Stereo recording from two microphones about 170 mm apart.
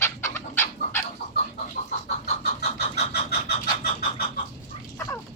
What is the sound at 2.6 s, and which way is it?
Vehicle, 70° left (ahead or behind).